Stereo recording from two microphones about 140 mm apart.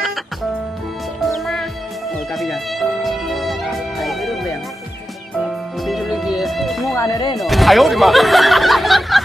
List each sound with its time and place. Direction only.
0.0 s music: centre (ahead or behind)
5.9 s music: centre (ahead or behind)
6.9 s speech: 25° left (ahead or behind)
7.3 s speech: centre (ahead or behind)